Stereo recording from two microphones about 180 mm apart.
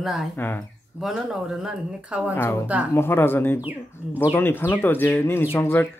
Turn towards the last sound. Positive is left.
turn(degrees=15)  # may be behind; listen again after turning